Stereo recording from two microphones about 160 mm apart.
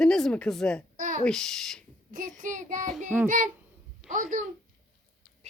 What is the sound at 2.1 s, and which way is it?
Child singing, 55° right (ahead or behind).